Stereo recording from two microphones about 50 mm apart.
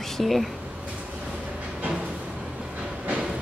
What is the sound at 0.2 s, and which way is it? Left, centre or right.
Speech, centre.